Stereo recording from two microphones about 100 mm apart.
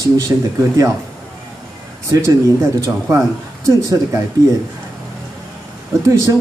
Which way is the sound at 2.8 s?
30° right (ahead or behind).